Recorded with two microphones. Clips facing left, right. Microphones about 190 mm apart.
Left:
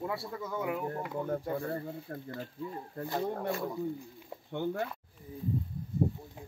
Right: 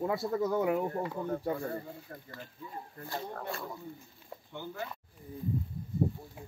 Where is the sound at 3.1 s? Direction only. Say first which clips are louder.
Left 6 dB; 20° left (ahead or behind).